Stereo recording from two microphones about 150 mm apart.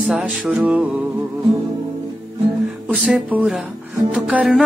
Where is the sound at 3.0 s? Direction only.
10° right (ahead or behind).